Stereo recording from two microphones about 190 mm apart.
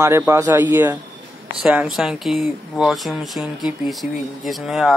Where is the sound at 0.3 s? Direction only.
15° right (ahead or behind).